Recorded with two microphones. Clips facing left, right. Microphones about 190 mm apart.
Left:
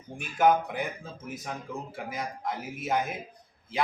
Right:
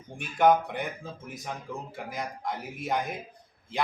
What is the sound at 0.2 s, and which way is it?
Speech, 5° left (ahead or behind).